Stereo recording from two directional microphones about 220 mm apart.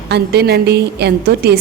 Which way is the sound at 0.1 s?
50° right (ahead or behind).